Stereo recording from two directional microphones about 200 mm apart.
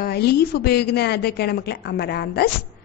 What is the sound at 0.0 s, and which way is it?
A woman's voice, 50° left (ahead or behind).